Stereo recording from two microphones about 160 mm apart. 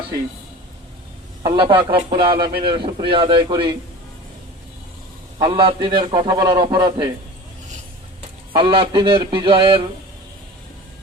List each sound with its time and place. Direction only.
1.4 s a man's voice: 30° right (ahead or behind)
5.4 s a man's voice: 30° right (ahead or behind)
8.5 s a man's voice: 35° right (ahead or behind)